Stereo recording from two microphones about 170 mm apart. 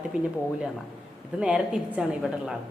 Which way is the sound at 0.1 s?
5° right (ahead or behind).